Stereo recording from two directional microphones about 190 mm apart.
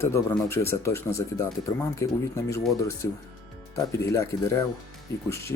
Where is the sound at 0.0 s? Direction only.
15° left (ahead or behind).